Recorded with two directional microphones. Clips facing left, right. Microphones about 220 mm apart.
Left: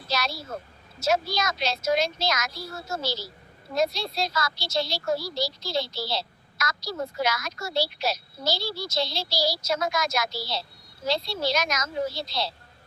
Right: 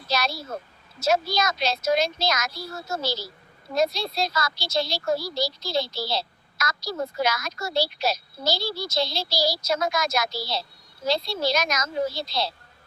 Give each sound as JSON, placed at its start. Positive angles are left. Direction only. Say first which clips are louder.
{"t": 1.0, "sound": "a woman's voice", "louder": "right 2 dB", "side_deg": -40}